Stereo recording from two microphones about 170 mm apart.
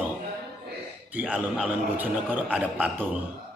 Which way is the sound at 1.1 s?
10° right (ahead or behind).